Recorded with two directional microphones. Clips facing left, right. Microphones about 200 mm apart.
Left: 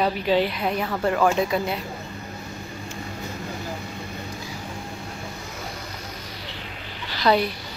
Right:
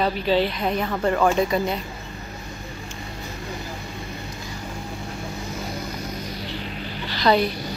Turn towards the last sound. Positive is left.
turn(degrees=5)  # may be behind; listen again after turning